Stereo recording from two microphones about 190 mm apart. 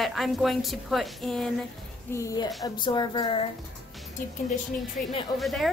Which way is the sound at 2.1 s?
20° left (ahead or behind).